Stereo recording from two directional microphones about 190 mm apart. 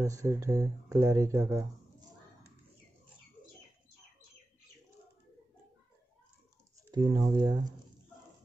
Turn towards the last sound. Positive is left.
turn(degrees=-20)  # may be behind; listen again after turning